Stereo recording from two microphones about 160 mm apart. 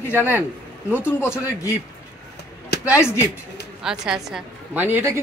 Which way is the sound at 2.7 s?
90° left.